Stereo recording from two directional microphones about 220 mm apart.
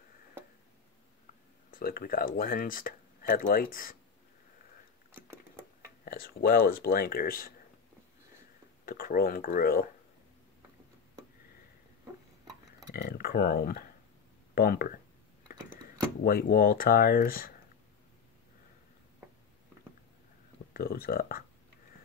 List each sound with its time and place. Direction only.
1.7 s speech: 40° left (ahead or behind)
5.1 s a sound: 10° right (ahead or behind)
6.0 s speech: 40° left (ahead or behind)
8.8 s speech: 40° left (ahead or behind)
12.9 s speech: 45° left (ahead or behind)
16.3 s speech: 45° left (ahead or behind)
20.7 s speech: 45° left (ahead or behind)